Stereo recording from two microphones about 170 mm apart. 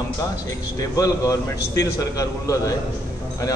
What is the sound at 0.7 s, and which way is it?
A man's voice, 20° left (ahead or behind).